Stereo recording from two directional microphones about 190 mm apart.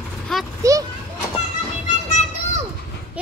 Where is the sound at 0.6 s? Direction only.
15° right (ahead or behind).